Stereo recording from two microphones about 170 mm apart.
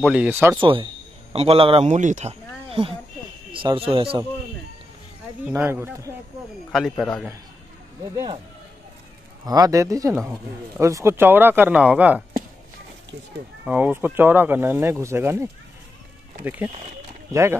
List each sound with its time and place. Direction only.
0.0 s speech: 5° right (ahead or behind)
0.6 s a man's voice: 30° right (ahead or behind)
3.5 s a man's voice: 30° right (ahead or behind)
5.4 s speech: 15° right (ahead or behind)
6.7 s a man's voice: centre (ahead or behind)
9.4 s speech: 20° right (ahead or behind); by 12.2 s 5° right (ahead or behind)
13.7 s speech: 10° right (ahead or behind)